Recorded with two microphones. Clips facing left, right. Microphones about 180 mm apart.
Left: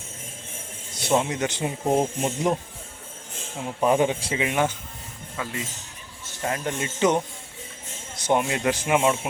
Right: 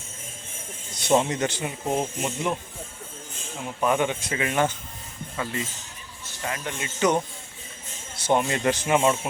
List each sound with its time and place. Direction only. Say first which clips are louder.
0.9 s a man's voice: right 1 dB; 5° left (ahead or behind)
1.5 s speech: left 4 dB; 25° left (ahead or behind)
2.0 s speech: left 4 dB; 35° left (ahead or behind)
3.7 s speech: left 3 dB; 30° left (ahead or behind)
4.4 s speech: right 1 dB; 15° left (ahead or behind)
6.4 s speech: left 4 dB; 40° left (ahead or behind)
6.8 s speech: left 1 dB; 25° left (ahead or behind)
8.1 s speech: even; 15° left (ahead or behind)